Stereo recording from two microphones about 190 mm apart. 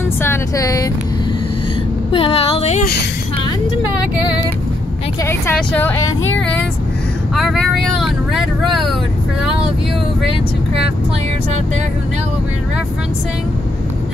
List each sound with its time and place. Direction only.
0.2 s speech: 15° left (ahead or behind)
2.1 s female singing: 30° left (ahead or behind)
5.2 s speech: 10° left (ahead or behind)
7.3 s speech: centre (ahead or behind)